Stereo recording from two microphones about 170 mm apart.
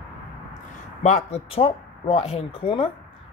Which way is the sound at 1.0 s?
40° left (ahead or behind).